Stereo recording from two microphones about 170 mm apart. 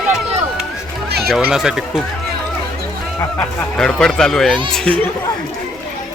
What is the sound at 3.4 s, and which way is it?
Speech, 5° left (ahead or behind).